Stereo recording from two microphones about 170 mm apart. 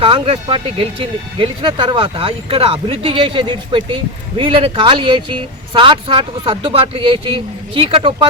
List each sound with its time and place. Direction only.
0.0 s speech: 30° right (ahead or behind)